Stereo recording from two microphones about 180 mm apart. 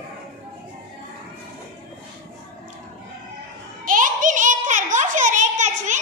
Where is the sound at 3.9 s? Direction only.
45° right (ahead or behind).